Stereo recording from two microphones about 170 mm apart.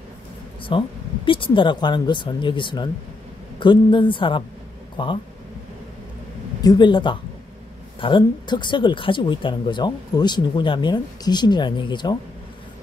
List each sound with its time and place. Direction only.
0.7 s speech: 30° left (ahead or behind)
6.6 s speech: 25° left (ahead or behind)